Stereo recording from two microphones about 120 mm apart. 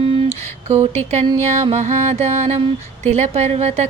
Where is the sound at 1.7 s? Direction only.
70° right (ahead or behind).